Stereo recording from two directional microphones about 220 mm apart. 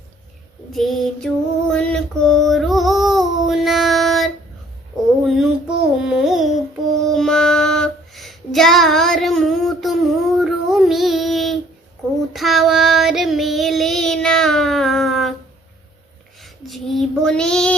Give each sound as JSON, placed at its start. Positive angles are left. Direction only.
{"t": 0.7, "sound": "female singing", "side_deg": 0}
{"t": 5.2, "sound": "child singing", "side_deg": 0}
{"t": 6.0, "sound": "a sound", "side_deg": 0}
{"t": 7.0, "sound": "female singing", "side_deg": 0}
{"t": 12.3, "sound": "child singing", "side_deg": 0}
{"t": 16.4, "sound": "child singing", "side_deg": 0}